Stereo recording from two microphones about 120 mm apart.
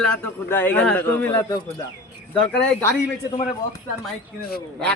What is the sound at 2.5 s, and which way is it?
Speech, 10° left (ahead or behind).